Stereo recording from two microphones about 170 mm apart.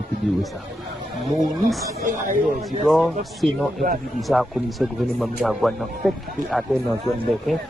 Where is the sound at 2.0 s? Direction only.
50° right (ahead or behind).